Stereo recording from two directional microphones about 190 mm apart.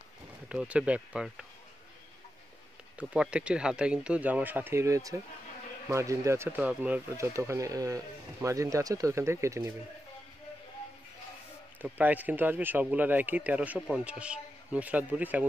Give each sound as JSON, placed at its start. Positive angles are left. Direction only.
{"t": 0.5, "sound": "speech", "side_deg": -5}
{"t": 3.0, "sound": "speech", "side_deg": -5}
{"t": 11.8, "sound": "speech", "side_deg": -10}